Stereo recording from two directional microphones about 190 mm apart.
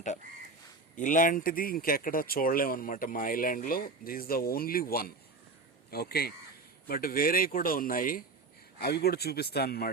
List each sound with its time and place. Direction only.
0.9 s speech: 45° left (ahead or behind)